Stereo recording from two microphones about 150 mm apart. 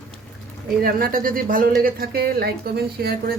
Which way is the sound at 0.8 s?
75° right (ahead or behind).